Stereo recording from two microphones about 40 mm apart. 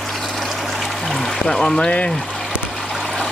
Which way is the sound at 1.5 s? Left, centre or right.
Centre.